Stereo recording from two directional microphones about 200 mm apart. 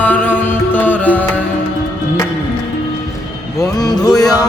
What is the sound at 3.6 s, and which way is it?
Music, 20° left (ahead or behind).